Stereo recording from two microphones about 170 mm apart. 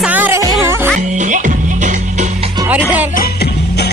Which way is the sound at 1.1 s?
45° right (ahead or behind).